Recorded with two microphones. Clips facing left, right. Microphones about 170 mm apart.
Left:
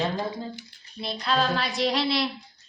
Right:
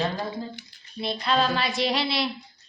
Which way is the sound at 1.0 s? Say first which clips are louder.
Right 2 dB; centre (ahead or behind).